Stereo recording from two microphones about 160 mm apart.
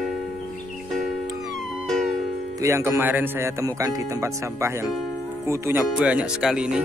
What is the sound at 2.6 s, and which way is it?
Speech, 15° right (ahead or behind).